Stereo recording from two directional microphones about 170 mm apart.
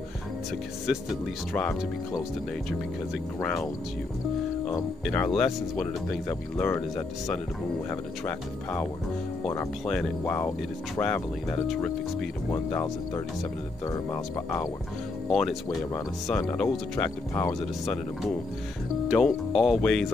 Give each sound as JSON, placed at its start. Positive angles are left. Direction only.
{"t": 1.5, "sound": "speech", "side_deg": 5}
{"t": 3.3, "sound": "speech", "side_deg": 5}
{"t": 5.0, "sound": "speech", "side_deg": 5}
{"t": 7.9, "sound": "speech", "side_deg": 10}
{"t": 9.8, "sound": "speech", "side_deg": 5}
{"t": 12.4, "sound": "speech", "side_deg": 15}
{"t": 15.2, "sound": "speech", "side_deg": 0}
{"t": 17.3, "sound": "speech", "side_deg": 15}
{"t": 17.8, "sound": "speech", "side_deg": 0}